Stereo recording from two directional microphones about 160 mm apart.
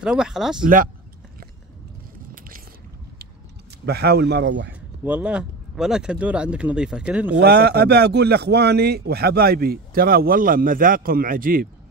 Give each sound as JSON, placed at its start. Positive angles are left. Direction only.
{"t": 0.0, "sound": "speech", "side_deg": -5}
{"t": 3.8, "sound": "a man's voice", "side_deg": -85}
{"t": 4.7, "sound": "speech", "side_deg": -10}
{"t": 7.4, "sound": "a man's voice", "side_deg": -80}